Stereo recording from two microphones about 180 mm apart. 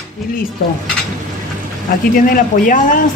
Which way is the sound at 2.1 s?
50° left (ahead or behind).